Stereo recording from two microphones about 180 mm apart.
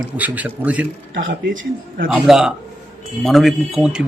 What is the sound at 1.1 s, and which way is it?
Speech, 80° right.